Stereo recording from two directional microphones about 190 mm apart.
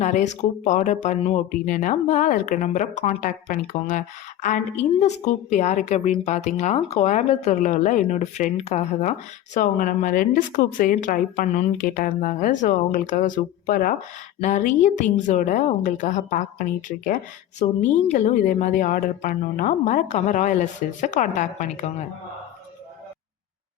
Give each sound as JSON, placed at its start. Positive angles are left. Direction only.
{"t": 0.0, "sound": "a woman's voice", "side_deg": 40}